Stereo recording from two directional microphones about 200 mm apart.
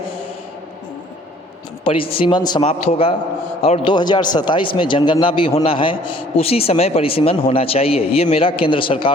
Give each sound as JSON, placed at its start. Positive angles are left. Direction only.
{"t": 1.8, "sound": "speech", "side_deg": 25}